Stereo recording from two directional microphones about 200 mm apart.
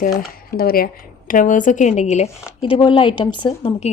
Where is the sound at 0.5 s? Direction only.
50° left (ahead or behind).